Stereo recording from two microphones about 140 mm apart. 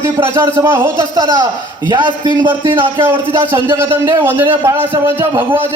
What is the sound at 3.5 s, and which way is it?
A man's voice, 15° right (ahead or behind).